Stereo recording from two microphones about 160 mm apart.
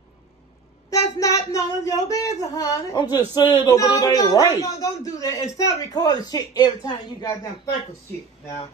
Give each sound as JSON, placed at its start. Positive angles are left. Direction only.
{"t": 0.8, "sound": "child singing", "side_deg": 20}
{"t": 2.0, "sound": "speech", "side_deg": 20}